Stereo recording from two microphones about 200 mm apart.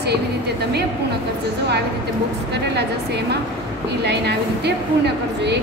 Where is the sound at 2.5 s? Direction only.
55° right (ahead or behind).